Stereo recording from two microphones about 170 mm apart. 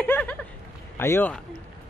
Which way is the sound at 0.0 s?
10° left (ahead or behind).